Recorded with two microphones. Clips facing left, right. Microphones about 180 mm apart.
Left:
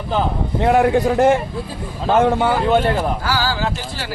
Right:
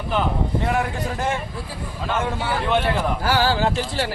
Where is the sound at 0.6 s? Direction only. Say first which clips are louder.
Left 14 dB; 60° left (ahead or behind).